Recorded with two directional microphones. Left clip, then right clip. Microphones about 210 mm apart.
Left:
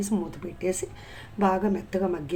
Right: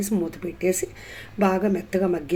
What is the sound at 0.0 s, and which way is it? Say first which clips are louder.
Speech: right 4 dB; 5° right (ahead or behind).